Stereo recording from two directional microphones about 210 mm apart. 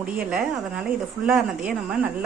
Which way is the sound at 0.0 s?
5° right (ahead or behind).